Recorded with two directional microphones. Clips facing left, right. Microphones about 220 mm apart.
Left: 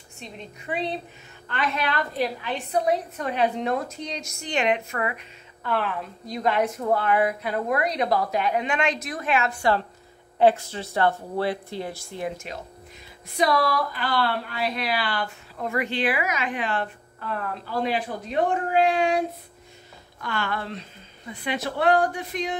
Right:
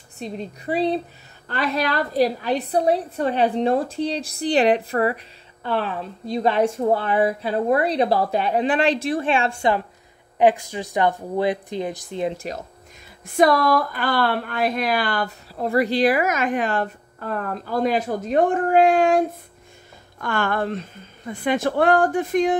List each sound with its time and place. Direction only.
0.2 s a woman's voice: 35° right (ahead or behind)
10.4 s a woman's voice: 15° right (ahead or behind)
13.4 s speech: 50° right (ahead or behind)